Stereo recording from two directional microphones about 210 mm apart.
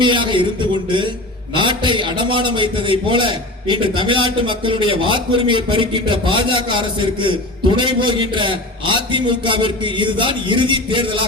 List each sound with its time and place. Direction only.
0.0 s a man's voice: 20° right (ahead or behind)